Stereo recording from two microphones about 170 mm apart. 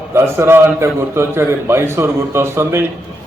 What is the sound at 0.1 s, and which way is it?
A man's voice, 15° right (ahead or behind).